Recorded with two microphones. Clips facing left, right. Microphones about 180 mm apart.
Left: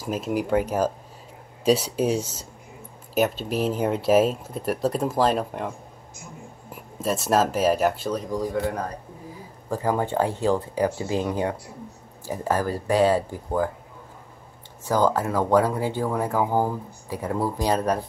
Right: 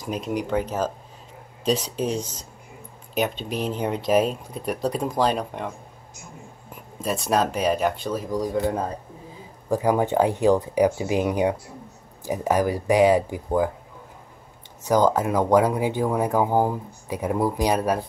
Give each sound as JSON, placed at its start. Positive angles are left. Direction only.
{"t": 0.0, "sound": "speech", "side_deg": 5}
{"t": 6.7, "sound": "speech", "side_deg": 5}
{"t": 8.4, "sound": "a man's voice", "side_deg": -20}
{"t": 14.8, "sound": "speech", "side_deg": -20}